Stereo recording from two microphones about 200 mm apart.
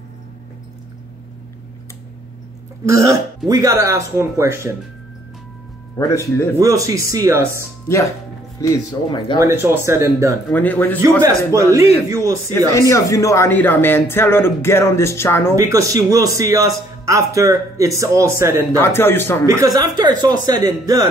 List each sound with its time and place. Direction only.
2.8 s a man's voice: 15° right (ahead or behind)
5.9 s speech: 15° left (ahead or behind)
6.6 s a man's voice: 15° right (ahead or behind)
8.6 s speech: 15° left (ahead or behind)
9.4 s a man's voice: 15° right (ahead or behind)
10.5 s speech: 10° left (ahead or behind)
11.0 s a man's voice: 15° right (ahead or behind)
12.5 s speech: 15° left (ahead or behind)
15.5 s a man's voice: 15° right (ahead or behind)
18.8 s speech: 10° left (ahead or behind)
19.4 s a man's voice: 15° right (ahead or behind)